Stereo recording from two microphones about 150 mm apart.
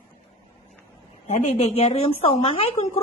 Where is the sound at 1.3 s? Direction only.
50° left (ahead or behind).